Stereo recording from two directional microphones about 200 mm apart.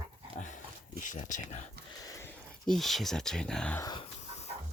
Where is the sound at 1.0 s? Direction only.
40° left (ahead or behind).